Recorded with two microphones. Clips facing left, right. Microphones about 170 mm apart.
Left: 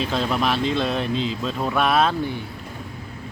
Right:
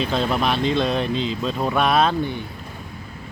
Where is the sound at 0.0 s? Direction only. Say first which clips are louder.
Right 1 dB; centre (ahead or behind).